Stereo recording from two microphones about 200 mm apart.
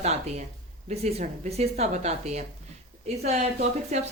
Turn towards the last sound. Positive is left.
turn(degrees=-35)  # may be behind; listen again after turning